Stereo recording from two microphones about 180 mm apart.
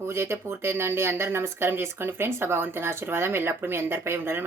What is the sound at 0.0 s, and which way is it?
Speech, 15° right (ahead or behind).